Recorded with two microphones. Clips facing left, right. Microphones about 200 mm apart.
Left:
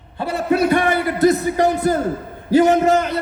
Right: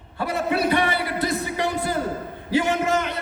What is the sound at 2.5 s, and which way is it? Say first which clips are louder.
Speech: left 8 dB; 40° left (ahead or behind).